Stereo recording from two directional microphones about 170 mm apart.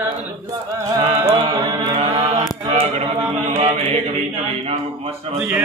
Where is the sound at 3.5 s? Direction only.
40° right (ahead or behind).